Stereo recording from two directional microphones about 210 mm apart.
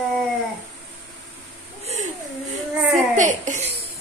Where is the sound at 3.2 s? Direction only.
35° right (ahead or behind).